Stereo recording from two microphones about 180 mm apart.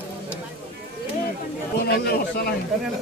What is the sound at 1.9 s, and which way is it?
Speech, 65° left (ahead or behind).